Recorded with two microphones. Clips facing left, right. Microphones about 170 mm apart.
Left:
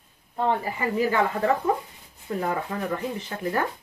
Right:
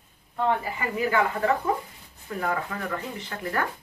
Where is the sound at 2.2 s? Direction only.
25° left (ahead or behind).